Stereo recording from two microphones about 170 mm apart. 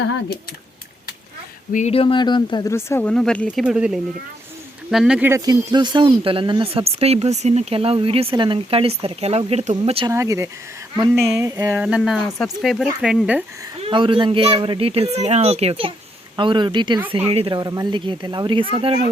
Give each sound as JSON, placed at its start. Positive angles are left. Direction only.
{"t": 1.7, "sound": "speech", "side_deg": 40}
{"t": 5.3, "sound": "speech", "side_deg": -25}
{"t": 10.1, "sound": "speech", "side_deg": -15}
{"t": 13.8, "sound": "speech", "side_deg": -30}